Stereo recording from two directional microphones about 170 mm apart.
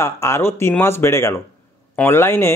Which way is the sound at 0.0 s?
15° left (ahead or behind).